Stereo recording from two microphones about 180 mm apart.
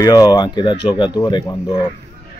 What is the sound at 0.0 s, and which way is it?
Speech, 20° left (ahead or behind).